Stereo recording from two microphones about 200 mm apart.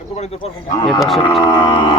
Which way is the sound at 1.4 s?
20° left (ahead or behind).